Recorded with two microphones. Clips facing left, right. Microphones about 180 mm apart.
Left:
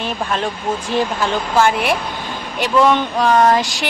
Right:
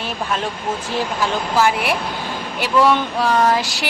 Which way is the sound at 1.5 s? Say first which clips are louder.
Left 2 dB; 5° right (ahead or behind).